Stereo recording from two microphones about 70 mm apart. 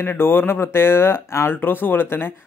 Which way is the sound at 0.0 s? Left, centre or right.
Left.